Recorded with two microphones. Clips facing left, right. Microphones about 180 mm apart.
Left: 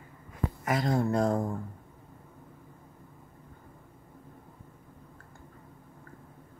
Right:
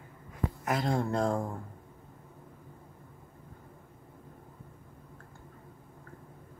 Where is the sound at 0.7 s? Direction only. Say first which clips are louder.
Left 3 dB; centre (ahead or behind).